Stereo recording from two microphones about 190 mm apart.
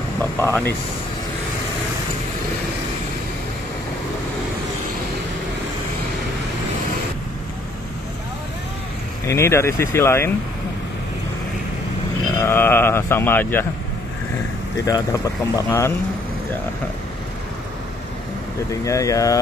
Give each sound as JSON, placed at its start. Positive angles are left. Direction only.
{"t": 0.2, "sound": "speech", "side_deg": 10}
{"t": 9.2, "sound": "speech", "side_deg": 15}
{"t": 12.4, "sound": "speech", "side_deg": 15}
{"t": 14.9, "sound": "speech", "side_deg": 20}
{"t": 18.7, "sound": "speech", "side_deg": 15}